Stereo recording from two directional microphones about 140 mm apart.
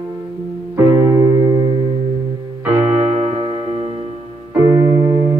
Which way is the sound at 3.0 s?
50° right (ahead or behind).